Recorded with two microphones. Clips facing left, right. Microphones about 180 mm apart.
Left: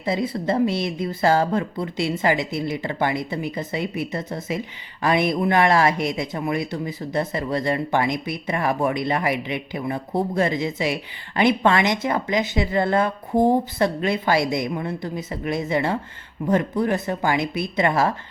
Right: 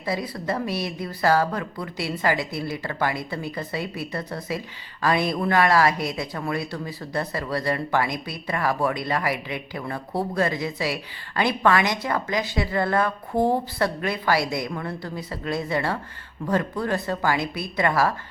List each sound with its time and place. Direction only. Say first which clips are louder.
0.0 s speech: left 4 dB; 25° left (ahead or behind)